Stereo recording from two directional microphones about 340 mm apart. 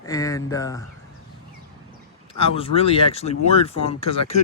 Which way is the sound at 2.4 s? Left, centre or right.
Centre.